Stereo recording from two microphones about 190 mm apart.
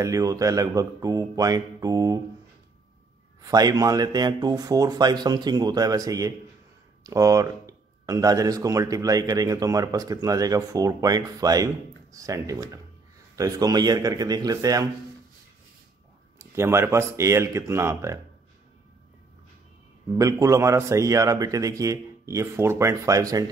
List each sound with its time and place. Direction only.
0.0 s speech: 15° right (ahead or behind)
3.4 s speech: 20° right (ahead or behind)
16.3 s speech: 15° right (ahead or behind)
20.2 s speech: 15° right (ahead or behind)